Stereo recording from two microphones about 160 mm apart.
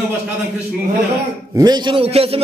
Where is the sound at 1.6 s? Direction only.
25° right (ahead or behind).